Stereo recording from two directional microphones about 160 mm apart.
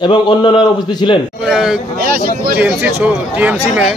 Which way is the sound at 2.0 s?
65° right (ahead or behind).